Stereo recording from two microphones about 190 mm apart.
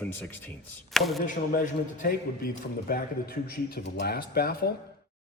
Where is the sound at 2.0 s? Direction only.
50° left (ahead or behind).